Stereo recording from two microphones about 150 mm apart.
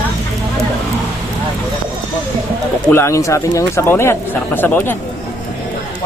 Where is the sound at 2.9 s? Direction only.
20° left (ahead or behind).